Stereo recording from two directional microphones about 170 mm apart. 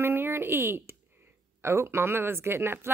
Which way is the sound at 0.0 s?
15° right (ahead or behind).